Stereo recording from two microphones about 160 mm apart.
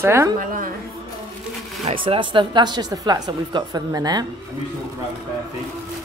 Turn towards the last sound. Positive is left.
turn(degrees=-25)  # may be behind; listen again after turning